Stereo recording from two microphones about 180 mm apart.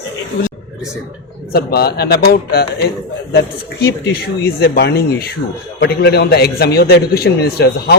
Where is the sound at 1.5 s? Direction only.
60° left (ahead or behind).